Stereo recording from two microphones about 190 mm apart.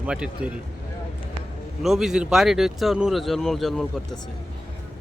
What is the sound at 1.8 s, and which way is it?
Speech, centre (ahead or behind).